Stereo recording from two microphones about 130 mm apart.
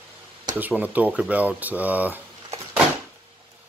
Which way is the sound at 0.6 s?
10° right (ahead or behind).